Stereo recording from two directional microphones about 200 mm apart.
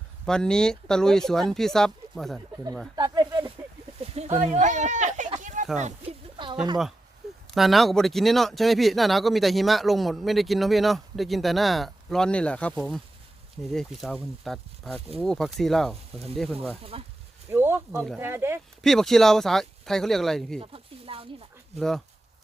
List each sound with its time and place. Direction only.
0.3 s speech: 5° left (ahead or behind)
2.9 s a sound: 20° right (ahead or behind)
4.4 s speech: 35° right (ahead or behind)
5.4 s a sound: 40° right (ahead or behind)
5.7 s speech: 35° right (ahead or behind)
6.3 s a sound: 25° right (ahead or behind)
7.5 s speech: centre (ahead or behind)
16.9 s speech: 30° right (ahead or behind)
17.5 s speech: 10° right (ahead or behind)
18.8 s speech: centre (ahead or behind)
20.6 s a sound: 30° right (ahead or behind)
21.8 s speech: centre (ahead or behind)